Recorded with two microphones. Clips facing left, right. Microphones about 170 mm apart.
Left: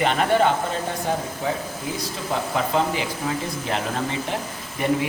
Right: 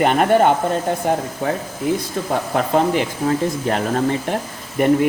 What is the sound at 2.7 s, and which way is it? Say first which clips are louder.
Speech: right 9 dB; 45° right (ahead or behind).